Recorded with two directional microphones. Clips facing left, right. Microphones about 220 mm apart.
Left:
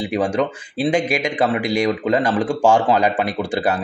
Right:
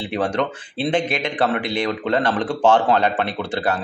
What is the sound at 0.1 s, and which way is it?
Speech, 10° left (ahead or behind).